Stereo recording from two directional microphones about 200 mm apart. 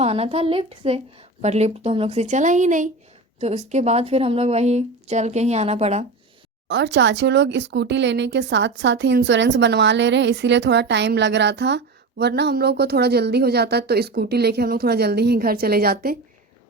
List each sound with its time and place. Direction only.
0.0 s a woman's voice: 30° right (ahead or behind)
6.7 s a woman's voice: 60° right (ahead or behind)